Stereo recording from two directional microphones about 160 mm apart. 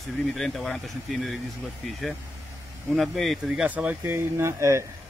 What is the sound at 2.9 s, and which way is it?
Speech, centre (ahead or behind).